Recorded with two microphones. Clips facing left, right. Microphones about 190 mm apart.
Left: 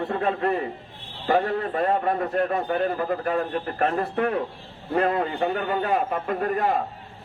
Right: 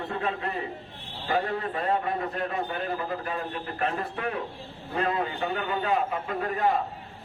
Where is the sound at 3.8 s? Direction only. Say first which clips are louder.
Left 6 dB; 45° left (ahead or behind).